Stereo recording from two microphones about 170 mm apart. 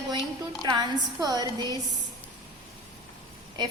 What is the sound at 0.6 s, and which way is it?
A woman's voice, 25° right (ahead or behind).